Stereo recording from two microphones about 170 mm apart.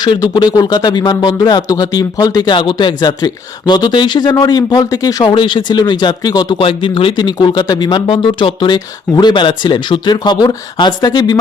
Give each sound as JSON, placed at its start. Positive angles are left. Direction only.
{"t": 0.0, "sound": "speech", "side_deg": 25}